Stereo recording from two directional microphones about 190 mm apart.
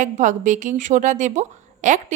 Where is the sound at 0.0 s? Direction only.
40° right (ahead or behind).